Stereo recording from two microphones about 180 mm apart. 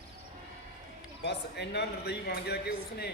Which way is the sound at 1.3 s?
70° left (ahead or behind).